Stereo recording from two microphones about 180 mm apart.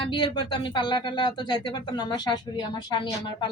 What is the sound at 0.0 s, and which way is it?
Speech, 25° left (ahead or behind).